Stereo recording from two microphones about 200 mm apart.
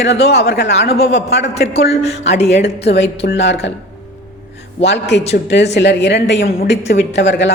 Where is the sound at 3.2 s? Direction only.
60° left (ahead or behind).